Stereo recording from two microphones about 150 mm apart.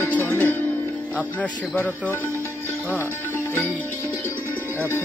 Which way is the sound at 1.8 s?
15° left (ahead or behind).